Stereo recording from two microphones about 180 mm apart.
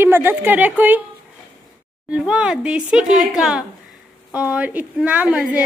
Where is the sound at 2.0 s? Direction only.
5° right (ahead or behind).